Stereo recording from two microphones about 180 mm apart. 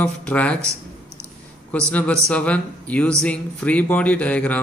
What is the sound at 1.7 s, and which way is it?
A man's voice, 5° left (ahead or behind).